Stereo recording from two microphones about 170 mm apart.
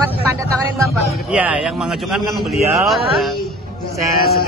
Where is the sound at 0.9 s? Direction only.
5° right (ahead or behind).